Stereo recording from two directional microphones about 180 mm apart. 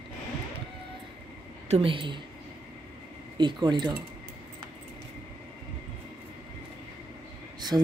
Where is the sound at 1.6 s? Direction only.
35° right (ahead or behind).